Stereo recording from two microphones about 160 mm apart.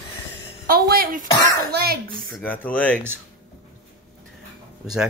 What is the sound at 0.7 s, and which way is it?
Speech, 65° right (ahead or behind).